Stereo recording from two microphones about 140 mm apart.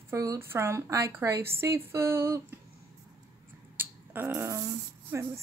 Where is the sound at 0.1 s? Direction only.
20° right (ahead or behind).